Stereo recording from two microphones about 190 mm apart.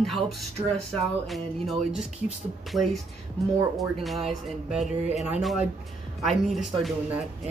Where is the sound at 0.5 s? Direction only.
30° right (ahead or behind).